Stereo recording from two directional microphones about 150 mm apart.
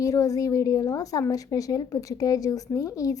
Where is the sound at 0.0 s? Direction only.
20° left (ahead or behind).